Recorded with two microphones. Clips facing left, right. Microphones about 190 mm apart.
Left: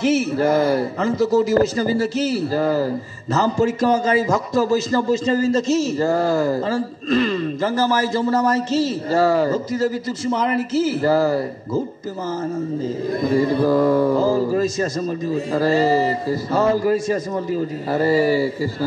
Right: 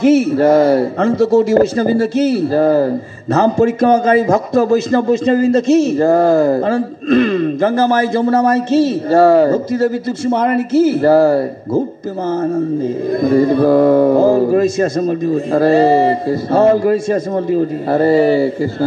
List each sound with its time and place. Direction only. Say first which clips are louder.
0.0 s speech: right 7 dB; 55° right (ahead or behind)